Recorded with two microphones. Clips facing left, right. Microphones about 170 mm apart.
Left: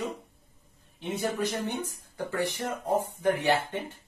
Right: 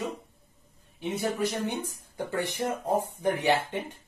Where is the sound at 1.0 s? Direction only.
10° right (ahead or behind).